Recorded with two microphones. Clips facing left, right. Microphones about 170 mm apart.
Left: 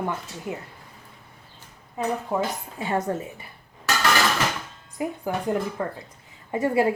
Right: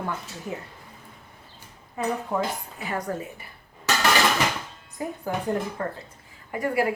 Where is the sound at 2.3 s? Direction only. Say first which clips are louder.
Left 2 dB; 5° left (ahead or behind).